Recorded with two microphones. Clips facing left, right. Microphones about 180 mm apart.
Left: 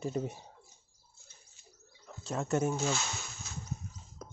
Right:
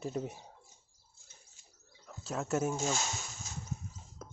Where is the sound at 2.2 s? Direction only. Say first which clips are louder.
Left 2 dB; 5° right (ahead or behind).